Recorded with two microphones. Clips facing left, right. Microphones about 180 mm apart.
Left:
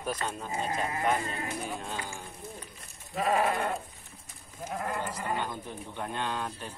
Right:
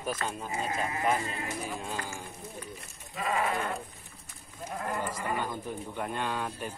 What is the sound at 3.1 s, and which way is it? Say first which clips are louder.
Goat: left 3 dB; 40° left (ahead or behind).